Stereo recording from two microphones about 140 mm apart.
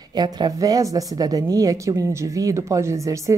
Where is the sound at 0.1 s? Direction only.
30° right (ahead or behind).